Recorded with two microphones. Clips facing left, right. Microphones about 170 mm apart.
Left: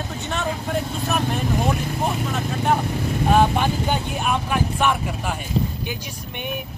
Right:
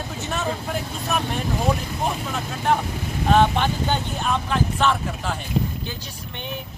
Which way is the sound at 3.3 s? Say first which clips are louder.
Even; 10° left (ahead or behind).